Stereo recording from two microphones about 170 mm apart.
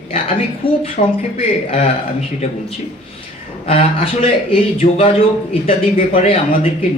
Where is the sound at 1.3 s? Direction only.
45° left (ahead or behind).